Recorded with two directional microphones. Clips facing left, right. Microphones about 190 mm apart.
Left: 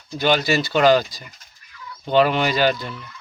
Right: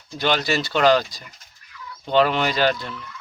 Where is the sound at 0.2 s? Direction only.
5° left (ahead or behind).